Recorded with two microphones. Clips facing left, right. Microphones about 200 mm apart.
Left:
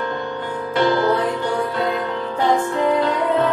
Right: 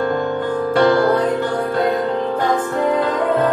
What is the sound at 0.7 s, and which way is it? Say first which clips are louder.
Music: right 3 dB; 50° right (ahead or behind).